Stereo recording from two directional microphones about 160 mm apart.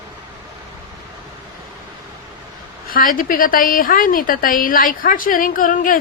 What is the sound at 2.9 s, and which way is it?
A woman's voice, 60° left (ahead or behind).